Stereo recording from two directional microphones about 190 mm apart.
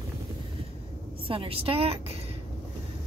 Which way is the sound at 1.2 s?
30° right (ahead or behind).